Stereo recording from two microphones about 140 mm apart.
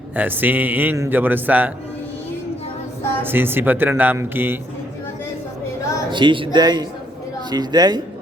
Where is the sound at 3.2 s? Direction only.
15° right (ahead or behind).